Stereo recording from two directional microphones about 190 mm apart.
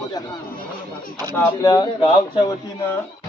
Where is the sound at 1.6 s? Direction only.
20° left (ahead or behind).